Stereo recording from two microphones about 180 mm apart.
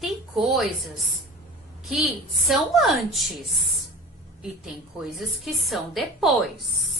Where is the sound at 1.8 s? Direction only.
Centre (ahead or behind).